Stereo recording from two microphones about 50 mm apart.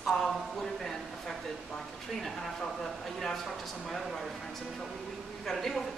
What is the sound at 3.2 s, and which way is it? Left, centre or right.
Speech, centre.